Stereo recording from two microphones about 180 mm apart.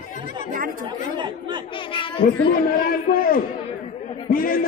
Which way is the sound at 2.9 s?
55° left (ahead or behind).